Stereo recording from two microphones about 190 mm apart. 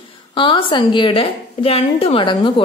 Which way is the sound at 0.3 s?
25° left (ahead or behind).